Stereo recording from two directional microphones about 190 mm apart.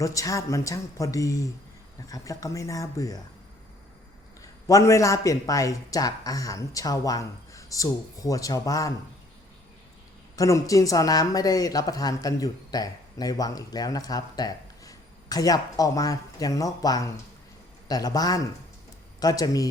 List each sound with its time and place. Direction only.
0.0 s speech: 15° left (ahead or behind)
4.7 s speech: 15° left (ahead or behind)
10.3 s speech: 15° left (ahead or behind)